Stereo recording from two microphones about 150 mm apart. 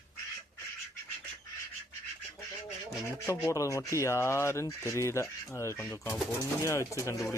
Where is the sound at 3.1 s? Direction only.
20° left (ahead or behind).